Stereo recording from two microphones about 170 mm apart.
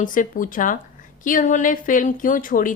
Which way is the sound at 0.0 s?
50° left (ahead or behind).